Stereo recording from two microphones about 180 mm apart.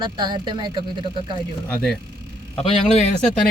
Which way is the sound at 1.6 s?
5° left (ahead or behind).